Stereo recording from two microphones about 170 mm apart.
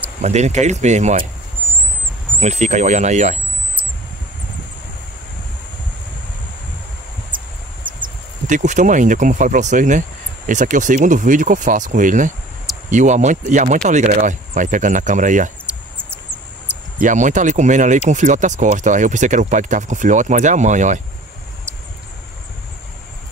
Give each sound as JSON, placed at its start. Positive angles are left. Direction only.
{"t": 0.2, "sound": "speech", "side_deg": -40}
{"t": 2.4, "sound": "speech", "side_deg": -40}
{"t": 7.3, "sound": "a sound", "side_deg": -30}
{"t": 8.5, "sound": "speech", "side_deg": -45}
{"t": 15.6, "sound": "a sound", "side_deg": -15}
{"t": 17.0, "sound": "speech", "side_deg": -45}